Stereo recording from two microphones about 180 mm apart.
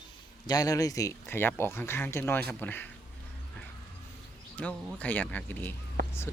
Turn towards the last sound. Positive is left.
turn(degrees=-55)  # may be behind; listen again after turning